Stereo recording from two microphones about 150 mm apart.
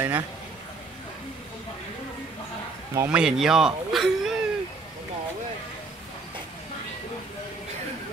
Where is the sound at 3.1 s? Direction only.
5° right (ahead or behind).